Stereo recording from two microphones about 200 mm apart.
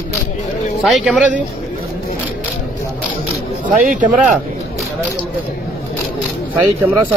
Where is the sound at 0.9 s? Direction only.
Centre (ahead or behind).